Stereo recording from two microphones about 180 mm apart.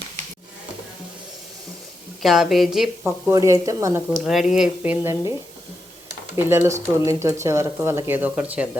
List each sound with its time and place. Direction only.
2.2 s speech: centre (ahead or behind)
3.3 s speech: 20° right (ahead or behind)
4.2 s speech: centre (ahead or behind)
6.3 s speech: 15° right (ahead or behind)